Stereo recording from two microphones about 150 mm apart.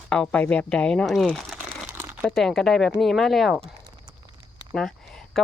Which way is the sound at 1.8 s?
15° right (ahead or behind).